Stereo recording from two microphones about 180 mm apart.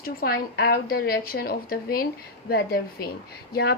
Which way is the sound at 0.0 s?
55° left (ahead or behind).